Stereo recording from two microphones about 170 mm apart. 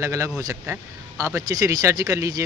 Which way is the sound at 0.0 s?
15° right (ahead or behind).